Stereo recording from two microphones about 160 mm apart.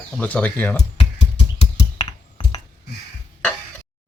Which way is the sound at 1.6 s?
30° left (ahead or behind).